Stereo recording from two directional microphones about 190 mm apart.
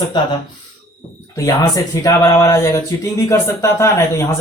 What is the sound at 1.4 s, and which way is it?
A man's voice, 15° left (ahead or behind).